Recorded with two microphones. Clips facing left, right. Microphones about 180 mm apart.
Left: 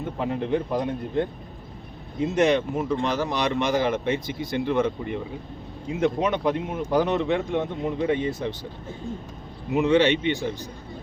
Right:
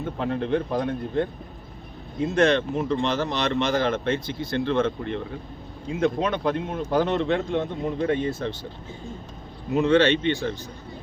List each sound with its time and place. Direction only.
0.2 s speech: 10° left (ahead or behind)
2.2 s speech: 15° left (ahead or behind)
9.7 s speech: 15° left (ahead or behind)